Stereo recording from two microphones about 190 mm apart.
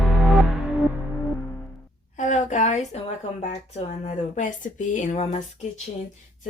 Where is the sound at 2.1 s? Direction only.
40° left (ahead or behind).